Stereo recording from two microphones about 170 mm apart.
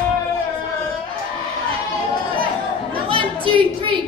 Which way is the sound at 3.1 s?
30° right (ahead or behind).